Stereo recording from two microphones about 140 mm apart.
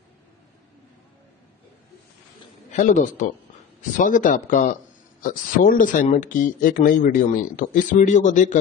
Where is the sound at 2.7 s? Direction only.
60° left (ahead or behind).